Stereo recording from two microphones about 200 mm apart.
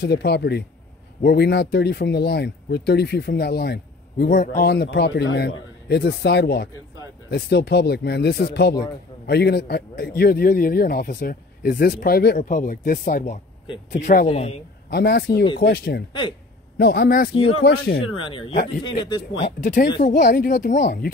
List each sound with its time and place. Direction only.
0.0 s a man's voice: 55° left (ahead or behind); by 14.5 s 30° left (ahead or behind)
14.9 s a man's voice: 55° left (ahead or behind)
16.1 s speech: 25° left (ahead or behind)
16.7 s a man's voice: 55° left (ahead or behind)
17.5 s speech: 90° left
18.2 s speech: 25° left (ahead or behind)
19.6 s a man's voice: 40° left (ahead or behind)